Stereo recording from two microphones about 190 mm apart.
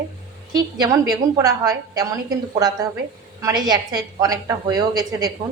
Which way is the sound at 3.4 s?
20° right (ahead or behind).